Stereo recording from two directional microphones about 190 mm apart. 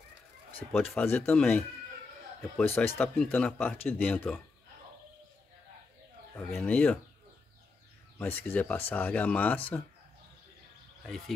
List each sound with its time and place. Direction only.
0.7 s speech: 10° left (ahead or behind)
6.6 s speech: 10° left (ahead or behind)
8.2 s speech: 10° left (ahead or behind)
11.1 s speech: centre (ahead or behind)